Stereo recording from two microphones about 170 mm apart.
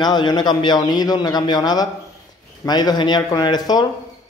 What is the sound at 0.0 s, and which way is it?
A man's voice, 25° left (ahead or behind).